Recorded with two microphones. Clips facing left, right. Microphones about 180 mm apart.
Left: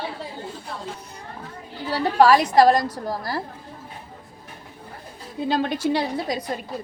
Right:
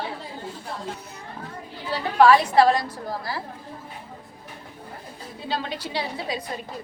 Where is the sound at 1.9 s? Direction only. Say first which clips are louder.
Left 1 dB; 40° left (ahead or behind).